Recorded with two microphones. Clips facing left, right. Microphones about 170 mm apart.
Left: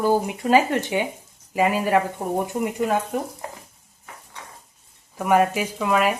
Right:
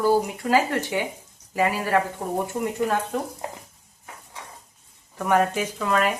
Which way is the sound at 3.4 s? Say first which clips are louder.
Right 2 dB; 20° right (ahead or behind).